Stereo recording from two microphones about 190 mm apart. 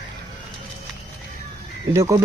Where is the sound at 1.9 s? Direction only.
15° right (ahead or behind).